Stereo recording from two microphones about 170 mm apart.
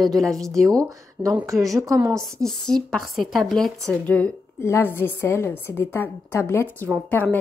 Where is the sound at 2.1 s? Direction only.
5° left (ahead or behind).